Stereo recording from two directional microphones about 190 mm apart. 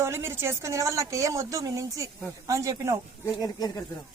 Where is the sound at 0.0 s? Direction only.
15° right (ahead or behind).